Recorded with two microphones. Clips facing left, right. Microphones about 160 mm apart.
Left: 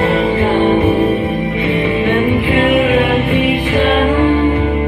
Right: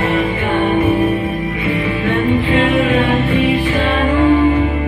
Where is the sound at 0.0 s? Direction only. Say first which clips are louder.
Left 4 dB; 30° left (ahead or behind).